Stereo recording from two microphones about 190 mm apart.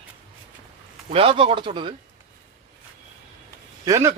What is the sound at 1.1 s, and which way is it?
Speech, 30° right (ahead or behind).